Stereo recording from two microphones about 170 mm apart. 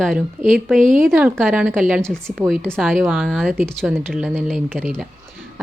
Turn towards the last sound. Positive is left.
turn(degrees=0)  # may be behind; listen again after turning